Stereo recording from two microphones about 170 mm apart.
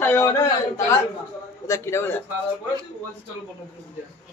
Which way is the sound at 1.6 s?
15° left (ahead or behind).